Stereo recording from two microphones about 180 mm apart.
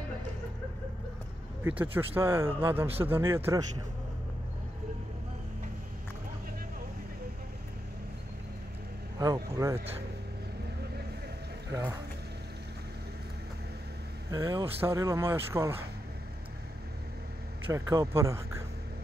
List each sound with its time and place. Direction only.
1.6 s speech: 10° right (ahead or behind)
9.2 s speech: 20° right (ahead or behind)
14.3 s speech: 20° right (ahead or behind)
17.6 s speech: 15° right (ahead or behind)